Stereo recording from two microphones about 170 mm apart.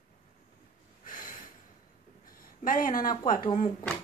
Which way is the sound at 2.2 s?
55° left (ahead or behind).